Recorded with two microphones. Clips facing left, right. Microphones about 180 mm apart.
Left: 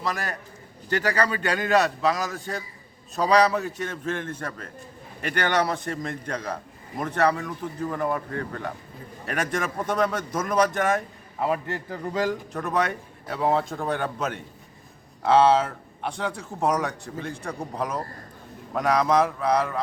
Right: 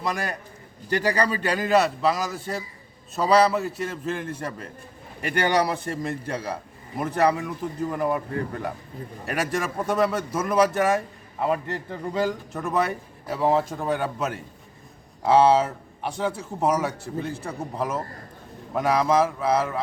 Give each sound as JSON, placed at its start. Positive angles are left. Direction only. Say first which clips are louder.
{"t": 0.0, "sound": "a man's voice", "louder": "right 2 dB", "side_deg": -15}